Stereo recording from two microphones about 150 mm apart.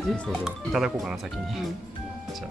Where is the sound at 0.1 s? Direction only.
Centre (ahead or behind).